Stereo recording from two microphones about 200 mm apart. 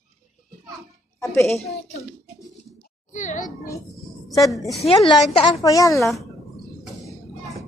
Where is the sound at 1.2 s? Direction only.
15° left (ahead or behind).